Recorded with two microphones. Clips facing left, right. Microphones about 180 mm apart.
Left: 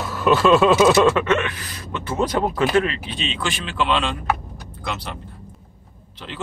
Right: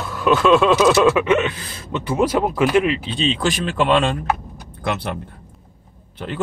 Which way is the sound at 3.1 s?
35° right (ahead or behind).